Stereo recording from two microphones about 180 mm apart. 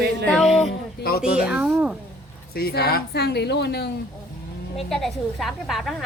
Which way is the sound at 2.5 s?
60° left (ahead or behind).